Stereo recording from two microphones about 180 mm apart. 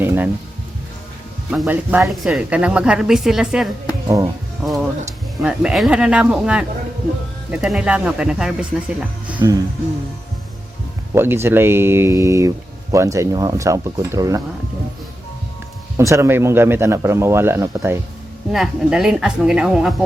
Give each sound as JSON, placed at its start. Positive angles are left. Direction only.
{"t": 0.0, "sound": "a sound", "side_deg": -10}
{"t": 1.5, "sound": "speech", "side_deg": -5}
{"t": 4.6, "sound": "music", "side_deg": 0}
{"t": 5.4, "sound": "speech", "side_deg": -5}
{"t": 11.1, "sound": "speech", "side_deg": -15}
{"t": 16.0, "sound": "speech", "side_deg": -15}
{"t": 18.5, "sound": "speech", "side_deg": 0}